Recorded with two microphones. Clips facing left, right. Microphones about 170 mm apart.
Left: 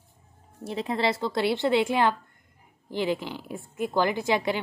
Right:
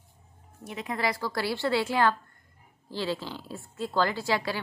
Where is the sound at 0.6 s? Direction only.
30° left (ahead or behind).